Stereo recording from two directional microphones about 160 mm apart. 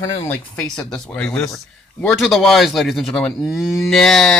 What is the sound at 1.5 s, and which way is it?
A man's voice, centre (ahead or behind).